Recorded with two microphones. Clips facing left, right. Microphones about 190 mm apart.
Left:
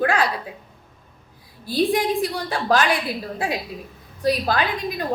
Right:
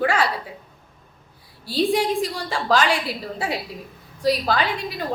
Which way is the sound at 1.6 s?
15° left (ahead or behind).